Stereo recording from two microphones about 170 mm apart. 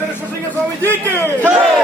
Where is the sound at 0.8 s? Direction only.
10° left (ahead or behind).